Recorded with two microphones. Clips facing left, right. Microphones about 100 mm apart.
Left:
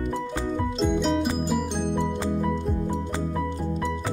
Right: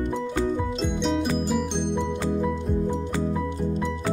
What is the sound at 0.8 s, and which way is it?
Music, 5° left (ahead or behind).